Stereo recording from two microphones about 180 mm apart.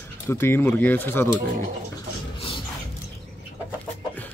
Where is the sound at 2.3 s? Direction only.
30° left (ahead or behind).